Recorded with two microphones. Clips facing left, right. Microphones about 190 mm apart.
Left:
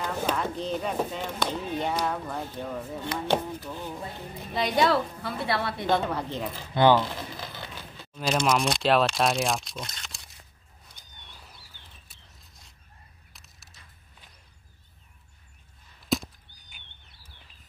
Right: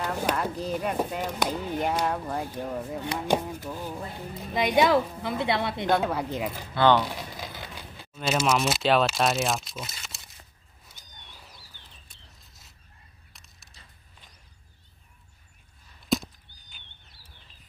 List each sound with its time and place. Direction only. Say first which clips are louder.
0.0 s a woman's voice: right 1 dB; 10° right (ahead or behind)
5.9 s a woman's voice: right 1 dB; 5° right (ahead or behind)
6.7 s speech: left 1 dB; 15° left (ahead or behind)
7.0 s speech: even; 10° right (ahead or behind)
10.9 s wild animals: right 1 dB; centre (ahead or behind)
12.1 s a sound: even; centre (ahead or behind)
16.1 s a sound: right 1 dB; centre (ahead or behind)